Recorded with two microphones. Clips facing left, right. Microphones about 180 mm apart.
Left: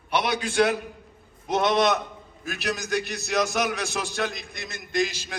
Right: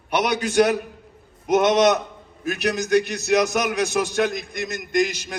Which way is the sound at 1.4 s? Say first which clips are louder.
Right 5 dB; 20° right (ahead or behind).